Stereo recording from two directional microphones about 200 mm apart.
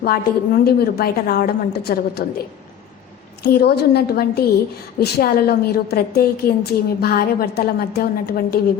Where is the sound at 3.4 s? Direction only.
50° left (ahead or behind).